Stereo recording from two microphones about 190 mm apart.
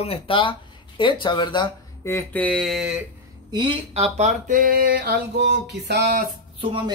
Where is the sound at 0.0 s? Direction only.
30° left (ahead or behind).